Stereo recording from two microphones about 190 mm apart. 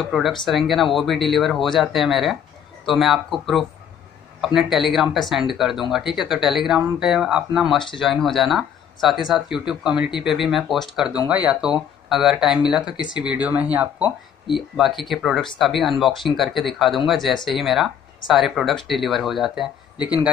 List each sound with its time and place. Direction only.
0.0 s speech: centre (ahead or behind)